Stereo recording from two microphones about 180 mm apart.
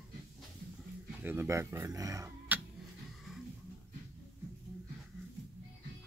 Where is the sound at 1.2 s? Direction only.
15° right (ahead or behind).